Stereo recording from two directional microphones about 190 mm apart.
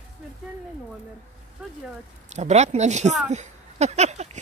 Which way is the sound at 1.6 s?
5° right (ahead or behind).